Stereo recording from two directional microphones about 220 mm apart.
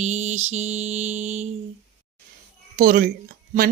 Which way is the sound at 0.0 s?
30° right (ahead or behind).